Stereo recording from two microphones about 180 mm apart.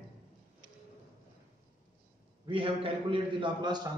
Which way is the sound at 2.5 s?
30° right (ahead or behind).